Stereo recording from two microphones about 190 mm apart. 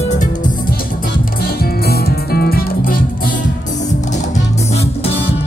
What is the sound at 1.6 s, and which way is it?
Music, 55° left (ahead or behind).